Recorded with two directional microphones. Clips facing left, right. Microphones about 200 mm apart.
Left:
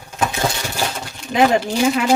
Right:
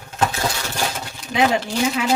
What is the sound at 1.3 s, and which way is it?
Speech, 50° left (ahead or behind).